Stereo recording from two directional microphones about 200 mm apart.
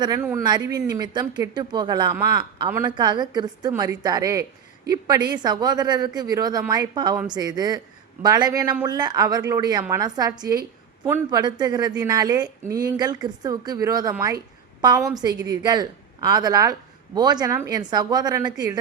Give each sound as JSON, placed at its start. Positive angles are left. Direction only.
{"t": 0.0, "sound": "a woman's voice", "side_deg": -15}